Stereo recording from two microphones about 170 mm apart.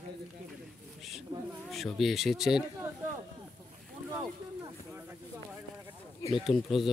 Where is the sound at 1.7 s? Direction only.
Centre (ahead or behind).